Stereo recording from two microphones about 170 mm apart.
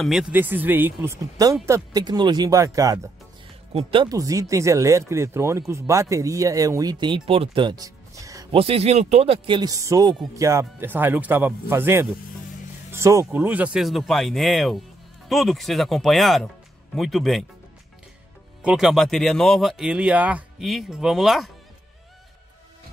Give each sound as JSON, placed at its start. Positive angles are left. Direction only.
{"t": 0.0, "sound": "speech", "side_deg": -5}
{"t": 8.5, "sound": "speech", "side_deg": -35}
{"t": 18.6, "sound": "speech", "side_deg": -5}